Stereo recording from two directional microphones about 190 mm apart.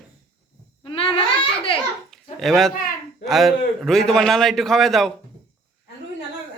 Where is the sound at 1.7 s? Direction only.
30° left (ahead or behind).